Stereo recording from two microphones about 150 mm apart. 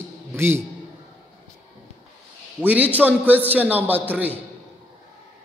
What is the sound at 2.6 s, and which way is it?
A man's voice, 10° right (ahead or behind).